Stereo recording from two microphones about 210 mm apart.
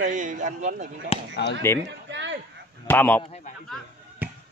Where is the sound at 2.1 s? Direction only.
60° right (ahead or behind).